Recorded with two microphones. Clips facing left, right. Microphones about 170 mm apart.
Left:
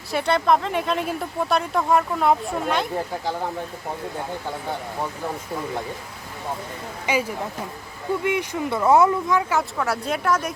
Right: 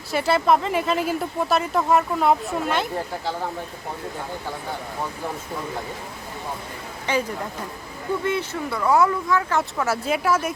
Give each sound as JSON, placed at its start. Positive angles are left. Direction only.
{"t": 0.1, "sound": "speech", "side_deg": -5}
{"t": 7.1, "sound": "a woman's voice", "side_deg": 10}
{"t": 9.5, "sound": "speech", "side_deg": 0}